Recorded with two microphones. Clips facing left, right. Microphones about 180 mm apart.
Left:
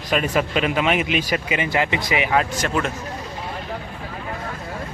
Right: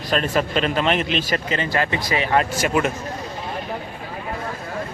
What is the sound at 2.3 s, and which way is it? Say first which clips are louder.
Speech: right 4 dB; 5° right (ahead or behind).